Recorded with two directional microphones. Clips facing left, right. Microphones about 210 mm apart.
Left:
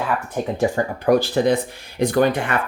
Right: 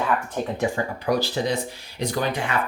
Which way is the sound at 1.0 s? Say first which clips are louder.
Left 7 dB; 55° left (ahead or behind).